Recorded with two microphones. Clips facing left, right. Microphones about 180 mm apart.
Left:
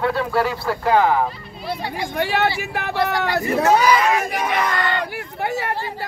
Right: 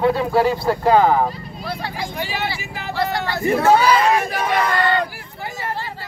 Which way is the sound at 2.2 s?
65° left (ahead or behind).